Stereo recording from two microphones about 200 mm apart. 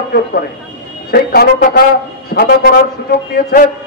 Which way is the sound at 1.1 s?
50° left (ahead or behind).